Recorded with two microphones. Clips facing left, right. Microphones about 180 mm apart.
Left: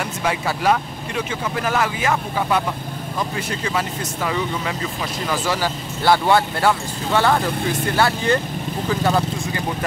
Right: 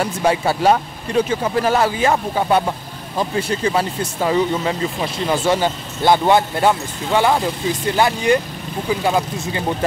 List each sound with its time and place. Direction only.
0.0 s speech: 30° right (ahead or behind); by 9.6 s 15° right (ahead or behind)